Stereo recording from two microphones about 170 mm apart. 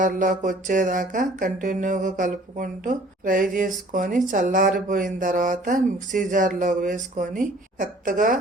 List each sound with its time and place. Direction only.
0.0 s speech: 50° right (ahead or behind)